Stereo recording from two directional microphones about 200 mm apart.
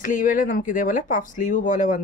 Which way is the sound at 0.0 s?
40° left (ahead or behind).